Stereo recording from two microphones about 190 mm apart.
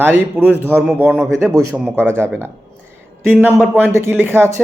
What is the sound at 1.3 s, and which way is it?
Speech, 15° right (ahead or behind).